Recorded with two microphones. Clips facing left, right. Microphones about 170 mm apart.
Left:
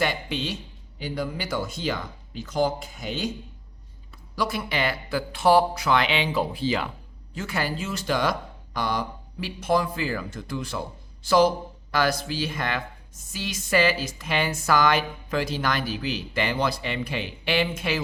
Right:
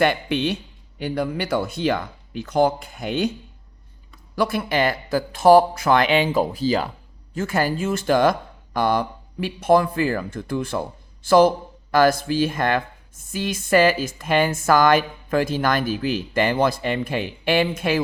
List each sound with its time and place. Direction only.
0.0 s speech: 60° right (ahead or behind)
4.4 s speech: 55° right (ahead or behind)